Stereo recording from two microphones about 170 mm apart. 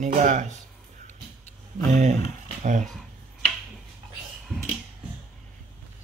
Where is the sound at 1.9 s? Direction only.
45° right (ahead or behind).